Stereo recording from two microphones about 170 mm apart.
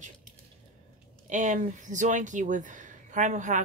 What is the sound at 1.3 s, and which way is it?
Speech, 50° right (ahead or behind).